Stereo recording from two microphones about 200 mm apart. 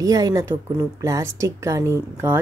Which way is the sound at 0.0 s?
15° right (ahead or behind).